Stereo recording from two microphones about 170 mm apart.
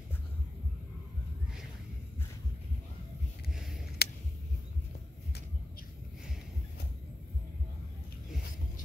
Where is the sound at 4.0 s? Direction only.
70° left (ahead or behind).